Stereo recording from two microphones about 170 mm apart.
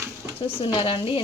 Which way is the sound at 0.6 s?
30° left (ahead or behind).